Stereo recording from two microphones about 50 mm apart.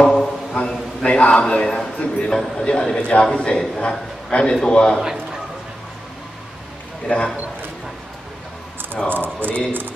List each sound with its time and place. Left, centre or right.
0.0 s mantra: centre
1.5 s a man's voice: centre
7.1 s a man's voice: centre
9.1 s speech: right